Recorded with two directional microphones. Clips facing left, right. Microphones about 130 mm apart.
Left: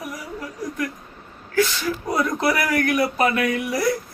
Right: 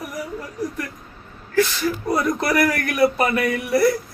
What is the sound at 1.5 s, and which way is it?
Speech, centre (ahead or behind).